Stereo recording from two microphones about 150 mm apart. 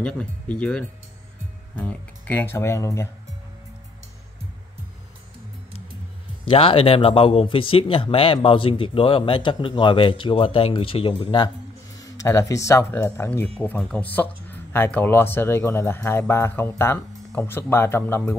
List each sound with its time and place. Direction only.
0.0 s speech: 5° left (ahead or behind)
6.4 s speech: 35° left (ahead or behind)
12.0 s speech: 20° left (ahead or behind)